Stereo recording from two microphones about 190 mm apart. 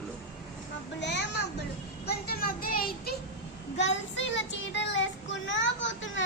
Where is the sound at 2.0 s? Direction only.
50° left (ahead or behind).